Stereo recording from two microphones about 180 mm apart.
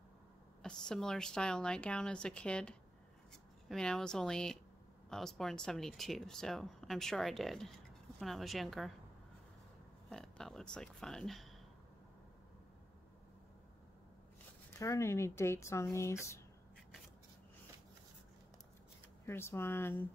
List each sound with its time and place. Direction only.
0.6 s speech: 5° left (ahead or behind)
10.0 s speech: 5° left (ahead or behind)
14.7 s speech: 15° left (ahead or behind)
19.2 s speech: 15° left (ahead or behind)